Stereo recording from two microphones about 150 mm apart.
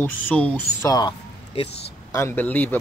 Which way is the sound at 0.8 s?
25° left (ahead or behind).